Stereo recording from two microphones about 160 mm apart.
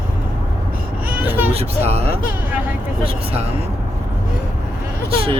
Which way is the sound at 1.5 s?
40° right (ahead or behind).